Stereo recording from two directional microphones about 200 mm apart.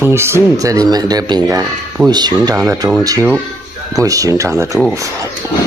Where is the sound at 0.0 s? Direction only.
10° right (ahead or behind).